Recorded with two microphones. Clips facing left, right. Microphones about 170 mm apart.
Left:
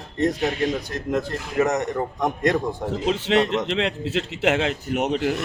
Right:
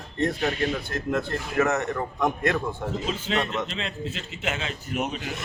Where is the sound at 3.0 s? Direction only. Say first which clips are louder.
Left 9 dB; 75° left (ahead or behind).